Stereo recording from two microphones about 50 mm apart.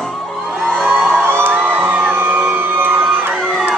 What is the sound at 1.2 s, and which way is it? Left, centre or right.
Music, right.